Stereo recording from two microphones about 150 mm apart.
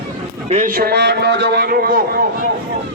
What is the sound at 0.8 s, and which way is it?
A man's voice, 90° right.